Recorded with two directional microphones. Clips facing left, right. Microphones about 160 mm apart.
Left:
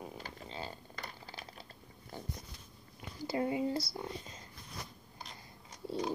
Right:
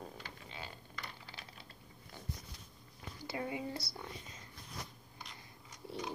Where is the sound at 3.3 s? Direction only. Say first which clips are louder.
Left 7 dB; 35° left (ahead or behind).